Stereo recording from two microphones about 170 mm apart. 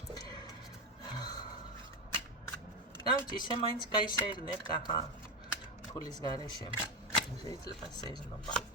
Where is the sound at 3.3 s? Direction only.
25° left (ahead or behind).